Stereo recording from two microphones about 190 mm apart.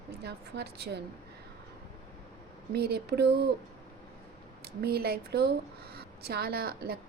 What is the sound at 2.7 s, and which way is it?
Speech, 60° right (ahead or behind).